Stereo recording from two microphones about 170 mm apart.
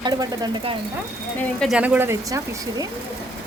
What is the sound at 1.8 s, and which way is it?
Speech, 10° right (ahead or behind).